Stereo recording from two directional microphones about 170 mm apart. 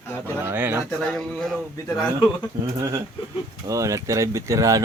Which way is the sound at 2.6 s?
15° right (ahead or behind).